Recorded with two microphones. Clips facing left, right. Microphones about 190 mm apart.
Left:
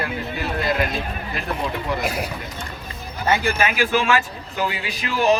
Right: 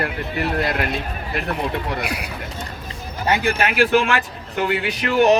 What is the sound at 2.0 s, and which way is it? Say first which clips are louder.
Speech: left 2 dB; 40° left (ahead or behind).